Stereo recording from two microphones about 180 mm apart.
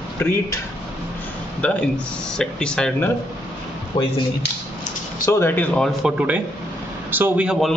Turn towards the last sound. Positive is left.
turn(degrees=-5)  # may be behind; listen again after turning